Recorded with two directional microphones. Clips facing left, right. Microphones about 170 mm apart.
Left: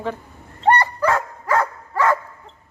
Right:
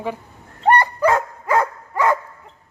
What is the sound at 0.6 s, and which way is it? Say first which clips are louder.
Dog: right 2 dB; 15° right (ahead or behind).